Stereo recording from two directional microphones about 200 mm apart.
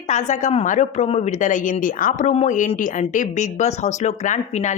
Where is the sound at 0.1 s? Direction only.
35° left (ahead or behind).